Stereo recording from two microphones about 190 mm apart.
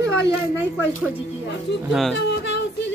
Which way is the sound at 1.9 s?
Centre (ahead or behind).